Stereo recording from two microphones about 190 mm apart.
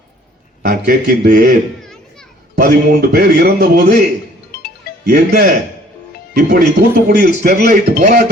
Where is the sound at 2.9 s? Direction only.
50° right (ahead or behind).